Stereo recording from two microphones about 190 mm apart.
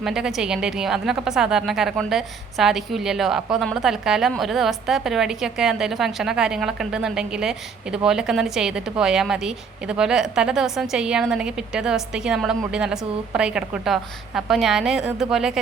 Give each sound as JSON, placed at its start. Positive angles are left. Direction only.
{"t": 0.0, "sound": "a woman's voice", "side_deg": 0}